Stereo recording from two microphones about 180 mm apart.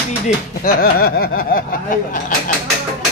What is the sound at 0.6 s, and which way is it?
Speech, 55° left (ahead or behind).